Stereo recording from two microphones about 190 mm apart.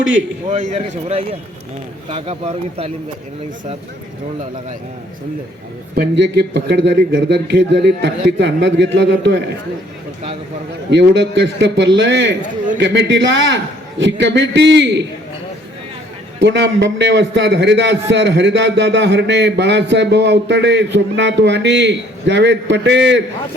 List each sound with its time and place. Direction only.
0.0 s speech: 75° right (ahead or behind)
0.5 s speech: 35° right (ahead or behind)
5.9 s a man's voice: 60° right (ahead or behind)
10.9 s a man's voice: 70° right (ahead or behind)
16.4 s a man's voice: 70° right (ahead or behind)